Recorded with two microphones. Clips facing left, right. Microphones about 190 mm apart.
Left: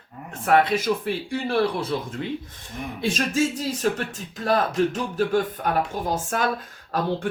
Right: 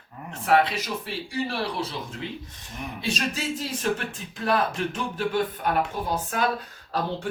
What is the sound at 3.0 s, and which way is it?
Speech, 45° left (ahead or behind).